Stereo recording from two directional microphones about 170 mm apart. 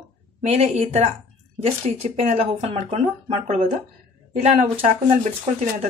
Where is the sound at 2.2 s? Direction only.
40° right (ahead or behind).